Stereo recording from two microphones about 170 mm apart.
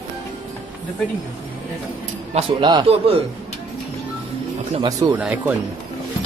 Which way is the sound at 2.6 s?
25° right (ahead or behind).